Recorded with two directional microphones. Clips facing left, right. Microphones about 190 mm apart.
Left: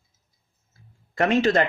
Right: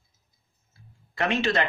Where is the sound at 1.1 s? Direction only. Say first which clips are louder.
Left 5 dB; 40° left (ahead or behind).